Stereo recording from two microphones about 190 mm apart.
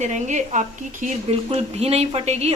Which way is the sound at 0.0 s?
40° right (ahead or behind).